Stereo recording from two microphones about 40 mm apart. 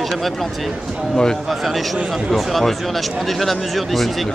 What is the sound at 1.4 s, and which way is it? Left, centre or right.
Speech, centre.